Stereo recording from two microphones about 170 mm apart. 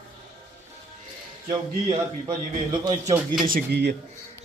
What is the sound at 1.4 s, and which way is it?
A man's voice, 25° right (ahead or behind).